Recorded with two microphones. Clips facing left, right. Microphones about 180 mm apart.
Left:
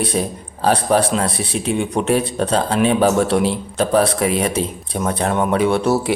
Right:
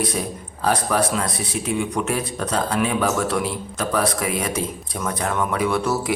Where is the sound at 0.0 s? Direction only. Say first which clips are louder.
Left 4 dB; 30° left (ahead or behind).